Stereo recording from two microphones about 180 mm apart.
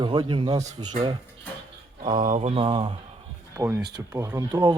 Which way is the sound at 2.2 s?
40° right (ahead or behind).